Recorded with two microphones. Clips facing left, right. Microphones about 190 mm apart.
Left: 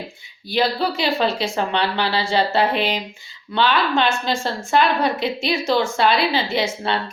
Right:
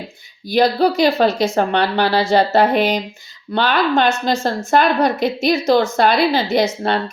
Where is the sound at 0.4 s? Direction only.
40° right (ahead or behind).